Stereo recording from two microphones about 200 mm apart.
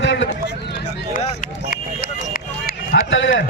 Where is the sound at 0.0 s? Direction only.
70° left (ahead or behind).